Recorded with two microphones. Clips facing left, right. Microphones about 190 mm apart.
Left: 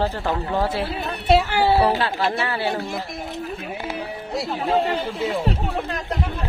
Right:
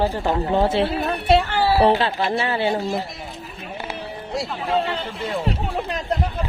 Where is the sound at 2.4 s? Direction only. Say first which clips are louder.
Right 3 dB; 20° right (ahead or behind).